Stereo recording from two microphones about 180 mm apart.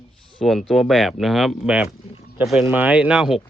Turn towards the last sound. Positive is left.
turn(degrees=-5)  # may be behind; listen again after turning